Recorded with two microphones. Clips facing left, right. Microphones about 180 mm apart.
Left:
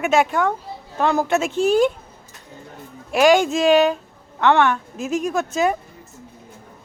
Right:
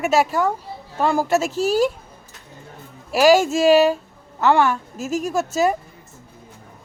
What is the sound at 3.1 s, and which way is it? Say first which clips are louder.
A woman's voice: right 1 dB; 5° right (ahead or behind).